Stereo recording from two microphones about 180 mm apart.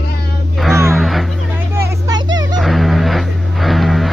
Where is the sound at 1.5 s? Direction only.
15° right (ahead or behind).